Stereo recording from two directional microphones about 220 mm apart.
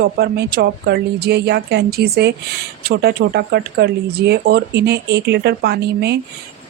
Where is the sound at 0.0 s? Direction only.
45° right (ahead or behind).